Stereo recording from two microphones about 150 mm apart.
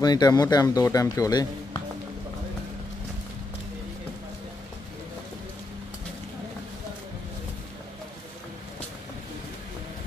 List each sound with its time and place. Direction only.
0.0 s speech: 25° left (ahead or behind)